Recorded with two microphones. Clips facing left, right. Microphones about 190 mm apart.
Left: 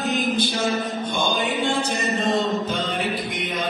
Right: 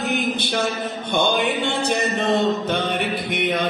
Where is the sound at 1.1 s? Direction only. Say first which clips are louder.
Right 7 dB; 65° right (ahead or behind).